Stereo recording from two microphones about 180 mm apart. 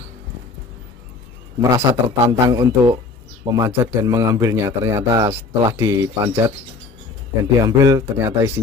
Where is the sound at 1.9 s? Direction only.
25° right (ahead or behind).